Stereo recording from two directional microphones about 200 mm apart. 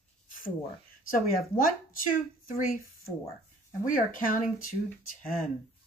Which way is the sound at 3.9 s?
45° left (ahead or behind).